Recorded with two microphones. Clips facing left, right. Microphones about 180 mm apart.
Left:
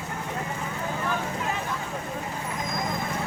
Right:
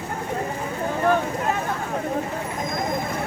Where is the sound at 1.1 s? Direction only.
50° right (ahead or behind).